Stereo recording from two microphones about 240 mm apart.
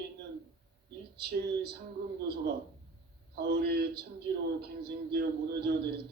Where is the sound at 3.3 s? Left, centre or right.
Right.